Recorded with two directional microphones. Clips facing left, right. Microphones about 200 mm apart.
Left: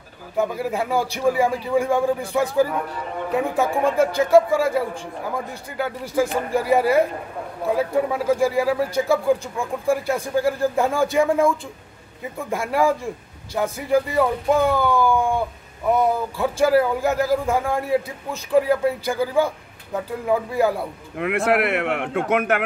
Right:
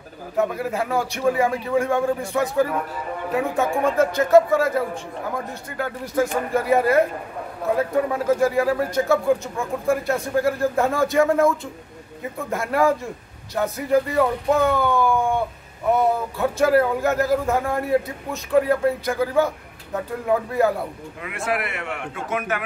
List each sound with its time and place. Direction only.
0.4 s a man's voice: centre (ahead or behind)
6.5 s a man's voice: centre (ahead or behind)
21.2 s speech: 65° left (ahead or behind)